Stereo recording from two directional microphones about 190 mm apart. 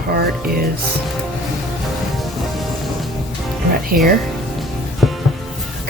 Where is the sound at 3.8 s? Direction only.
50° right (ahead or behind).